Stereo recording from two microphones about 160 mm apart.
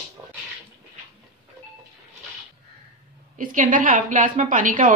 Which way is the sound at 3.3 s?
55° right (ahead or behind).